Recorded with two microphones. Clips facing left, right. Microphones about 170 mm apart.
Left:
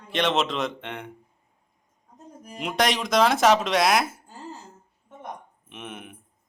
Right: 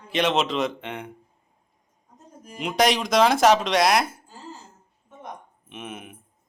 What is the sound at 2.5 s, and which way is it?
A man's voice, centre (ahead or behind).